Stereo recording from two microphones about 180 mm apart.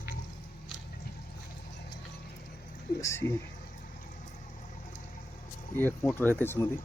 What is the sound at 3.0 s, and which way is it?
Speech, 15° left (ahead or behind).